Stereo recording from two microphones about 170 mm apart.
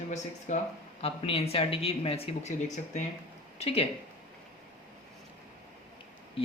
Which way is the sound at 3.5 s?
35° left (ahead or behind).